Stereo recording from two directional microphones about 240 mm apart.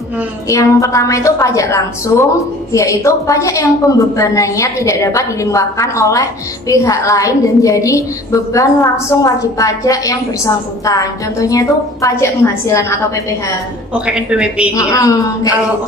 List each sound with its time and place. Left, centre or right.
0.5 s a woman's voice: centre
13.9 s a man's voice: centre
14.7 s a woman's voice: centre